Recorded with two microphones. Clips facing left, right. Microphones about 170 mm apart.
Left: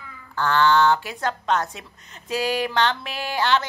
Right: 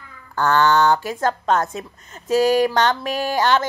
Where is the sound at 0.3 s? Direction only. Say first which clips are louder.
Right 2 dB; 45° right (ahead or behind).